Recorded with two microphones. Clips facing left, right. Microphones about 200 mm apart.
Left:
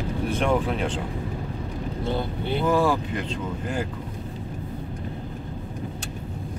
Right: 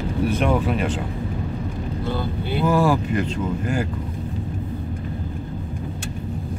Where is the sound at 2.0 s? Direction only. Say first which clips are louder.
Right 1 dB; 25° left (ahead or behind).